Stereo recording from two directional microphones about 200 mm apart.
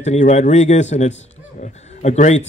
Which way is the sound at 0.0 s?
35° left (ahead or behind).